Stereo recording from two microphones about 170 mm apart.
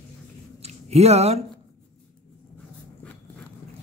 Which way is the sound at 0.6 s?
40° right (ahead or behind).